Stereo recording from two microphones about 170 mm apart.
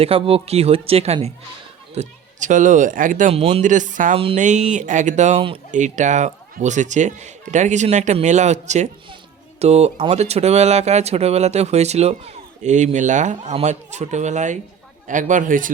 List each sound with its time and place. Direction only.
0.0 s speech: 35° right (ahead or behind); by 3.3 s 50° right (ahead or behind)
3.3 s speech: 35° right (ahead or behind); by 15.7 s 50° right (ahead or behind)